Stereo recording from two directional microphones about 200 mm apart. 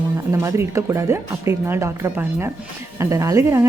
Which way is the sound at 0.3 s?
15° right (ahead or behind).